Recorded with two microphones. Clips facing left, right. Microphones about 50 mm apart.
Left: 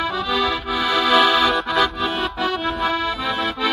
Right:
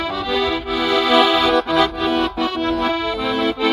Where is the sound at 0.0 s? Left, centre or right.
Right.